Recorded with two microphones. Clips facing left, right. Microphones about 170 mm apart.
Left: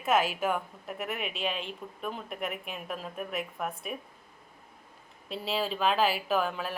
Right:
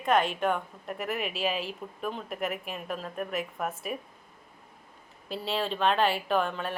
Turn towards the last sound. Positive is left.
turn(degrees=5)  # may be behind; listen again after turning